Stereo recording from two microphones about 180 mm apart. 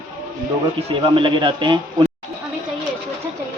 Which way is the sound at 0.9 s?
30° right (ahead or behind).